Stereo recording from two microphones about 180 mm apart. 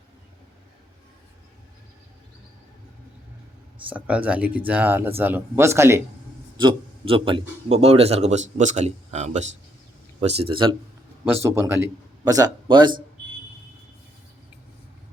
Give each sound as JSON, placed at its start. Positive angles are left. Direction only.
{"t": 3.8, "sound": "speech", "side_deg": -10}
{"t": 6.6, "sound": "a man's voice", "side_deg": -30}
{"t": 11.4, "sound": "a man's voice", "side_deg": -15}